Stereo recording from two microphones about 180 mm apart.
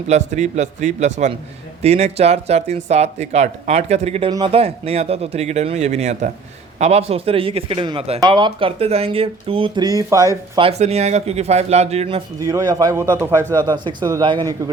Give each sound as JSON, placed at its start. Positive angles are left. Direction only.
{"t": 0.1, "sound": "speech", "side_deg": -40}
{"t": 10.6, "sound": "speech", "side_deg": -35}
{"t": 12.4, "sound": "speech", "side_deg": -20}